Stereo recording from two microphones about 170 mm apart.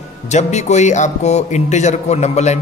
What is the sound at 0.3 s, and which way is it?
A man's voice, 45° left (ahead or behind).